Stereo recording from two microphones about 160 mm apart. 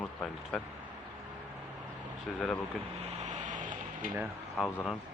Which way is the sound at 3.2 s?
45° right (ahead or behind).